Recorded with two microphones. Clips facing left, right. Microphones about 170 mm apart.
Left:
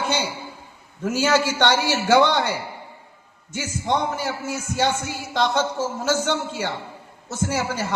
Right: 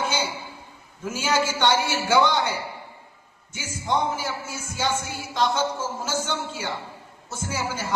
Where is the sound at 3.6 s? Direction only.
65° left (ahead or behind).